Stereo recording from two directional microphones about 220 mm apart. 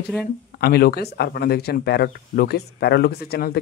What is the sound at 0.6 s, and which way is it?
Speech, 45° left (ahead or behind).